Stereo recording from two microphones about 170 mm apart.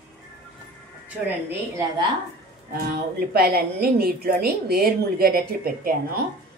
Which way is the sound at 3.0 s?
65° right (ahead or behind).